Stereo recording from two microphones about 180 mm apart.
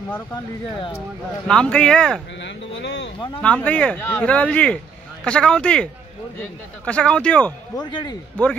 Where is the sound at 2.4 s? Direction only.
80° left.